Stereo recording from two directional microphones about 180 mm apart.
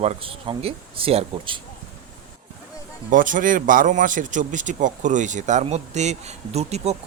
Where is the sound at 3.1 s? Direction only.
45° right (ahead or behind).